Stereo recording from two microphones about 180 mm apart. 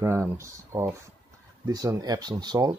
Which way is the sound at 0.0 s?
15° right (ahead or behind).